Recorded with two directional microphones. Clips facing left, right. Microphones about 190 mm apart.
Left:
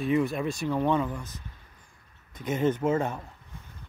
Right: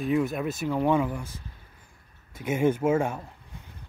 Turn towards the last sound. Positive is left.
turn(degrees=-10)  # may be behind; listen again after turning